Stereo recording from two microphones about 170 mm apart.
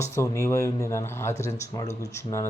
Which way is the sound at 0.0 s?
15° left (ahead or behind).